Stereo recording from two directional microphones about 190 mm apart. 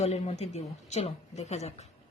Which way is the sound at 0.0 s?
35° left (ahead or behind).